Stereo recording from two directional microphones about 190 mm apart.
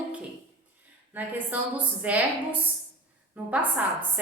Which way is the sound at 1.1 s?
10° right (ahead or behind).